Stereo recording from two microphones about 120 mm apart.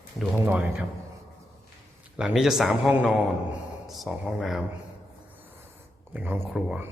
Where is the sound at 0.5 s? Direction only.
10° right (ahead or behind).